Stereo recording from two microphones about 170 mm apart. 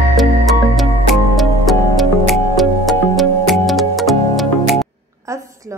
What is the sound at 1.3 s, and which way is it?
Music, centre (ahead or behind).